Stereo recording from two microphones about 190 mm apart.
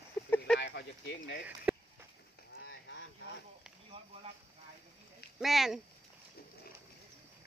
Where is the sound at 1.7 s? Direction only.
5° right (ahead or behind).